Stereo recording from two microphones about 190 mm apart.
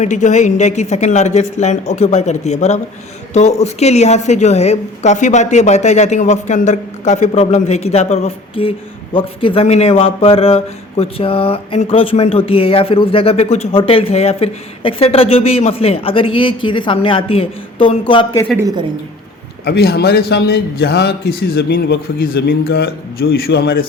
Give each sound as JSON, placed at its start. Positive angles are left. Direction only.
{"t": 0.0, "sound": "a woman's voice", "side_deg": 40}
{"t": 18.5, "sound": "a woman's voice", "side_deg": -20}
{"t": 19.6, "sound": "a man's voice", "side_deg": 55}